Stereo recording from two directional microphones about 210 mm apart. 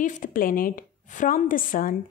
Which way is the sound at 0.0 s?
40° left (ahead or behind).